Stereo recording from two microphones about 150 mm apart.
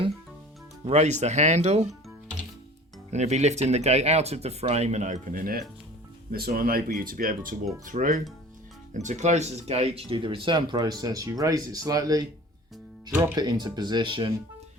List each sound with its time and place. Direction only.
0.9 s speech: 45° right (ahead or behind)
3.1 s speech: 50° right (ahead or behind); by 5.6 s 75° right (ahead or behind)
6.3 s speech: 90° right; by 12.2 s 25° right (ahead or behind)
13.3 s speech: 30° right (ahead or behind)